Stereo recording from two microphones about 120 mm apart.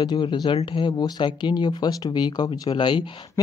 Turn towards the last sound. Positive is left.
turn(degrees=45)  # may be behind; listen again after turning